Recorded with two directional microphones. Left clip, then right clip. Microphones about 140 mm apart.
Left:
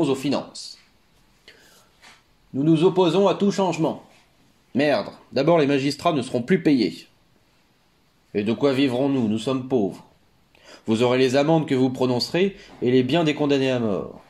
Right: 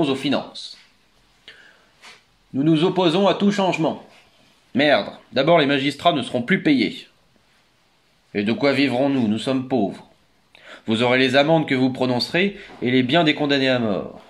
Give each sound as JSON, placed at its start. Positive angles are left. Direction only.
{"t": 0.0, "sound": "speech", "side_deg": 45}
{"t": 2.5, "sound": "speech", "side_deg": 35}
{"t": 8.3, "sound": "speech", "side_deg": 40}